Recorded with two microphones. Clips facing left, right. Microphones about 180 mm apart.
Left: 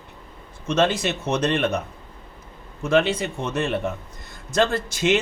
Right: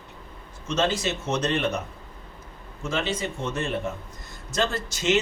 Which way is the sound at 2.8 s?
60° left (ahead or behind).